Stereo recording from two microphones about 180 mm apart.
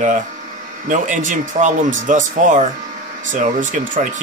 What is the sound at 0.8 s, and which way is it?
Speech, 45° right (ahead or behind).